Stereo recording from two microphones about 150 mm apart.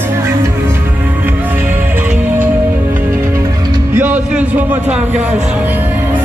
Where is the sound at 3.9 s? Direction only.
10° right (ahead or behind).